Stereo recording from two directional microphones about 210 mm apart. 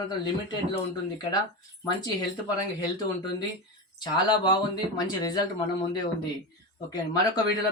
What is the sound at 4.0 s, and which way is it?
Speech, 20° left (ahead or behind).